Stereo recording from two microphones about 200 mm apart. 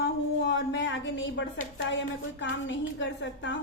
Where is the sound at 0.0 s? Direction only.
60° left (ahead or behind).